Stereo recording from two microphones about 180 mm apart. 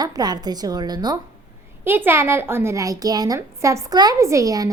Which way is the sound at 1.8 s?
10° right (ahead or behind).